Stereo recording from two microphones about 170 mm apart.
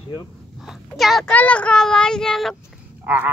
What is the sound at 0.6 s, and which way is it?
A child's voice, centre (ahead or behind).